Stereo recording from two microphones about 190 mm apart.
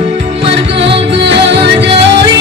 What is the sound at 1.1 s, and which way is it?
Music, 65° right (ahead or behind).